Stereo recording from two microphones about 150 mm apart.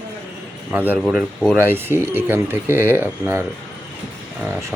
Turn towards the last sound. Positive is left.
turn(degrees=-15)  # may be behind; listen again after turning